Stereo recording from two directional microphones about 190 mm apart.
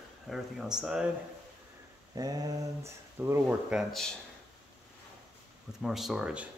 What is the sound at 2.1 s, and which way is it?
Speech, 20° right (ahead or behind).